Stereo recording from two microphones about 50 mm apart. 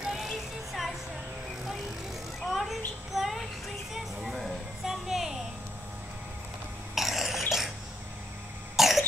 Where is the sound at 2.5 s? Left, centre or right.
Centre.